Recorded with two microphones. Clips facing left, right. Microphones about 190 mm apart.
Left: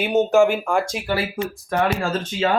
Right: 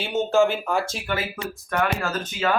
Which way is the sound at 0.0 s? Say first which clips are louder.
Left 4 dB; 15° left (ahead or behind).